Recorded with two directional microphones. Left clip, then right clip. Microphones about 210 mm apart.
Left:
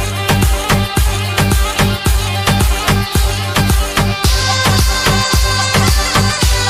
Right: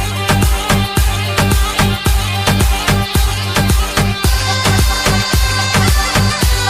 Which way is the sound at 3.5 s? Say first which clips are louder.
Even; centre (ahead or behind).